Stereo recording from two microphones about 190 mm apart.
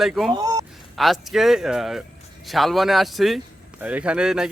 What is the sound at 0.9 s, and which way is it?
A man's voice, centre (ahead or behind).